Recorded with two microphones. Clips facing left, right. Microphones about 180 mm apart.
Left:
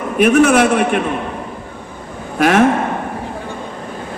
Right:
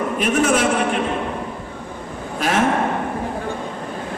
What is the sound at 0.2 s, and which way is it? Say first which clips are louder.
Speech: left 8 dB; 65° left (ahead or behind).